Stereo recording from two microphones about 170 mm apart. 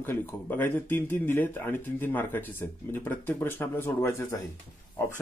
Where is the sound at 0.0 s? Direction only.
10° left (ahead or behind).